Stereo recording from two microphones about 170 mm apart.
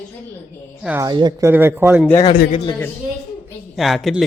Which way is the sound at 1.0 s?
25° right (ahead or behind).